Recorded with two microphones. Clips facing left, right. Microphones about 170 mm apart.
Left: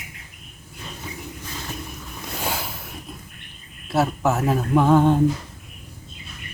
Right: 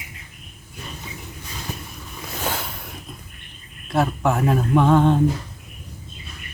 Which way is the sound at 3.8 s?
5° left (ahead or behind).